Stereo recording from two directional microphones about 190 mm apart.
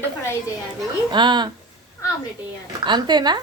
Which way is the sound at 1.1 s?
25° right (ahead or behind).